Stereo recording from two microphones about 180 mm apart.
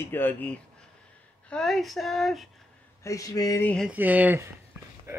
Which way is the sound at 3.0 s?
20° left (ahead or behind).